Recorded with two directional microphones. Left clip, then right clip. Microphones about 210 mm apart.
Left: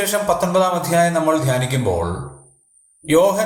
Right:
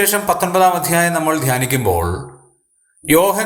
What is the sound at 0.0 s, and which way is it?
A man's voice, 35° right (ahead or behind).